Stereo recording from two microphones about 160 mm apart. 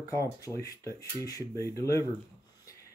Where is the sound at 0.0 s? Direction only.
20° left (ahead or behind).